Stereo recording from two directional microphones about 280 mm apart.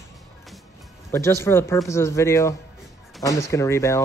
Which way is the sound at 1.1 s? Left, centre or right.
Centre.